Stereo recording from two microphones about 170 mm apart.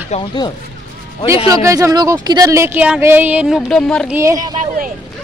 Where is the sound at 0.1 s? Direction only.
40° left (ahead or behind).